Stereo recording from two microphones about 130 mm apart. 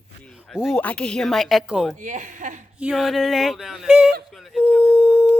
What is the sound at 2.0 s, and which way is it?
Speech, 75° right (ahead or behind).